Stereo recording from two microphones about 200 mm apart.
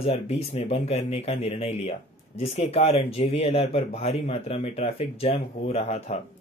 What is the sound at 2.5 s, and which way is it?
Speech, 30° left (ahead or behind).